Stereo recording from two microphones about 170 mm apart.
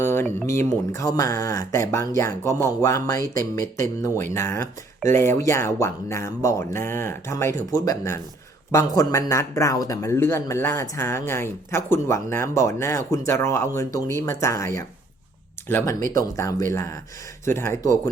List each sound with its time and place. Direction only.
0.0 s speech: 15° left (ahead or behind)
16.1 s speech: 20° left (ahead or behind)